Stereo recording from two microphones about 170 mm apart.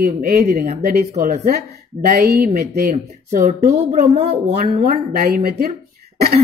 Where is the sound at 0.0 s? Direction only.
55° right (ahead or behind).